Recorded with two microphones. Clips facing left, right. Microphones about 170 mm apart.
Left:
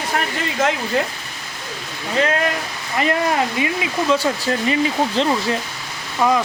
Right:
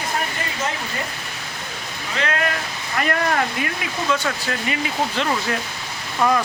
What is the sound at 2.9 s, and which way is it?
Speech, 20° left (ahead or behind).